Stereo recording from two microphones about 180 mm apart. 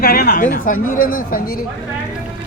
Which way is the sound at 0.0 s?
60° left (ahead or behind).